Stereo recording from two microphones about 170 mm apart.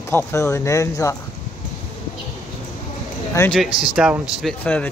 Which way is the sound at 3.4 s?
20° left (ahead or behind).